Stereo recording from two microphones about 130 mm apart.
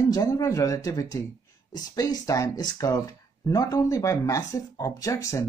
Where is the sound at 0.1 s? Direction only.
30° left (ahead or behind).